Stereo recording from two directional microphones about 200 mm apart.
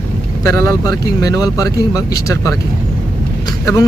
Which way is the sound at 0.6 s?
20° left (ahead or behind).